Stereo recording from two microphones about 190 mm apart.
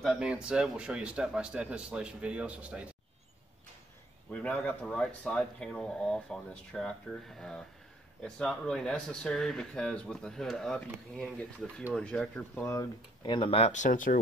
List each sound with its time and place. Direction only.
0.0 s speech: 5° right (ahead or behind)
4.3 s speech: 5° left (ahead or behind); by 14.2 s 45° left (ahead or behind)